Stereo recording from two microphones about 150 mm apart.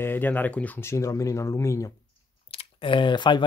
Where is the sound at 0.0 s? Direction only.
15° left (ahead or behind).